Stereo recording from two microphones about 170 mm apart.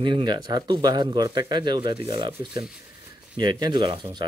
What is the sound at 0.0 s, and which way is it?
Speech, 25° right (ahead or behind).